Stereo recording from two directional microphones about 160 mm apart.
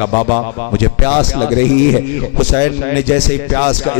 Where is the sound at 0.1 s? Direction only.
25° left (ahead or behind).